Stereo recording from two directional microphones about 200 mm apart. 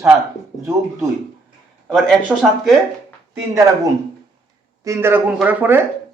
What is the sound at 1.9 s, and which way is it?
Speech, centre (ahead or behind).